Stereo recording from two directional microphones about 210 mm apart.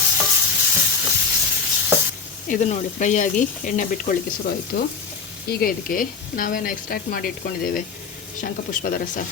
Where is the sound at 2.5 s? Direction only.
35° left (ahead or behind).